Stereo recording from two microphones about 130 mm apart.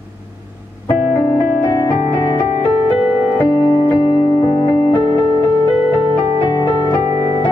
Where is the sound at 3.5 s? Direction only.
35° left (ahead or behind).